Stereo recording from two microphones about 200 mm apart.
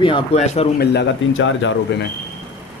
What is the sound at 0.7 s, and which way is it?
Speech, 60° left (ahead or behind).